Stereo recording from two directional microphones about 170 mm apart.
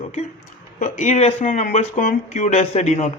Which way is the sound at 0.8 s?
50° left (ahead or behind).